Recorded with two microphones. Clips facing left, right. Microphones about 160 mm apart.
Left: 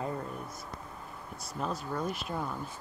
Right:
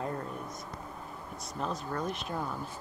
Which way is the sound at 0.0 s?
Centre (ahead or behind).